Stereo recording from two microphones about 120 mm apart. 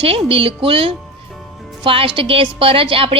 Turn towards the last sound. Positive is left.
turn(degrees=-50)  # may be behind; listen again after turning